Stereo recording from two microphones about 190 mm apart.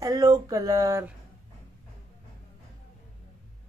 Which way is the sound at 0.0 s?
20° right (ahead or behind).